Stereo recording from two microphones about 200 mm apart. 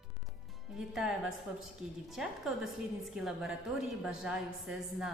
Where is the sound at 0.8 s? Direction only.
Centre (ahead or behind).